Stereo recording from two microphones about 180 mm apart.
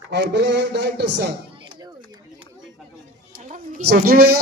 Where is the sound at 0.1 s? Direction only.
70° right (ahead or behind).